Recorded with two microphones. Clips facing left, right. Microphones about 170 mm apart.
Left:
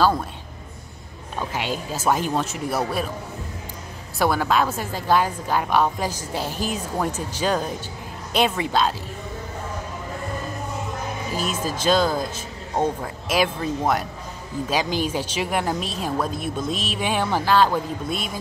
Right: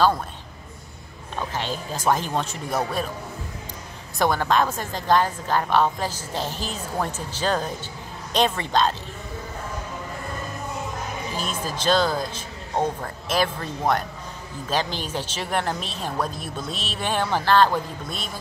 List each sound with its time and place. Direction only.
1.4 s a woman's voice: 10° left (ahead or behind)
4.2 s a woman's voice: 10° left (ahead or behind)
11.8 s a woman's voice: 10° left (ahead or behind)